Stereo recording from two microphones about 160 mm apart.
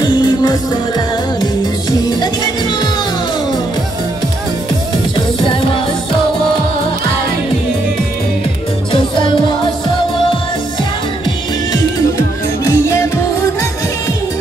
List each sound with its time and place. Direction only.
0.0 s music: 30° left (ahead or behind)
5.1 s music: 30° left (ahead or behind)
12.6 s music: 20° left (ahead or behind)